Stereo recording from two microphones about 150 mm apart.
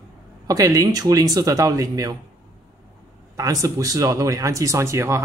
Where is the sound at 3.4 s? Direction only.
20° right (ahead or behind).